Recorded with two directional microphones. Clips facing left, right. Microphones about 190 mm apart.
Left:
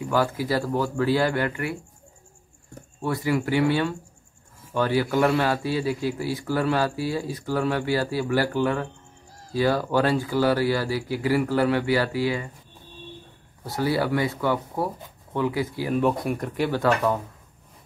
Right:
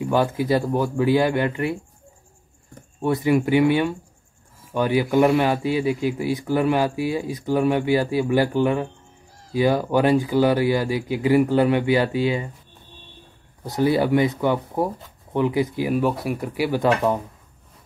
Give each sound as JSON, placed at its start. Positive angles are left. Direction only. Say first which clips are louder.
{"t": 0.0, "sound": "speech", "louder": "right 3 dB", "side_deg": -20}
{"t": 3.0, "sound": "a man's voice", "louder": "right 5 dB", "side_deg": -20}
{"t": 13.7, "sound": "speech", "louder": "right 5 dB", "side_deg": -20}
{"t": 16.0, "sound": "speech", "louder": "right 1 dB", "side_deg": -5}
{"t": 16.8, "sound": "speech", "louder": "right 3 dB", "side_deg": -20}